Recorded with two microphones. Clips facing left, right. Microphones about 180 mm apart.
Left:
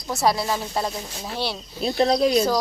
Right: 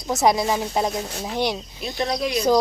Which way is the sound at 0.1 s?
20° right (ahead or behind).